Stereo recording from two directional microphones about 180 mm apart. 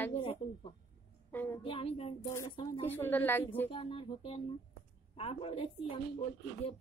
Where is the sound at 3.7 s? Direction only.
30° left (ahead or behind).